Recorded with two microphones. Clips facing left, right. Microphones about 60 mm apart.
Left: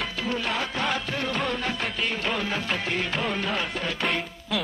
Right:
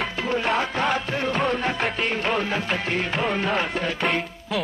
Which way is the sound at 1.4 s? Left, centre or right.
Centre.